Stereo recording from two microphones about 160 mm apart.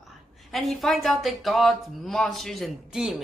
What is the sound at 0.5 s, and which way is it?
A woman's voice, centre (ahead or behind).